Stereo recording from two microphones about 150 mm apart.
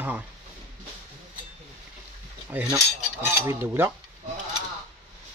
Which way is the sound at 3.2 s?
15° right (ahead or behind).